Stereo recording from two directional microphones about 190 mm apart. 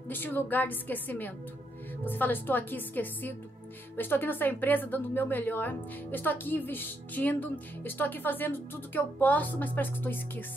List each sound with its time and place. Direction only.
0.1 s a woman's voice: 10° left (ahead or behind)